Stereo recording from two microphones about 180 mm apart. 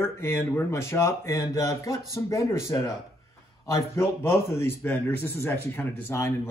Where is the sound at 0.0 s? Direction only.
15° left (ahead or behind).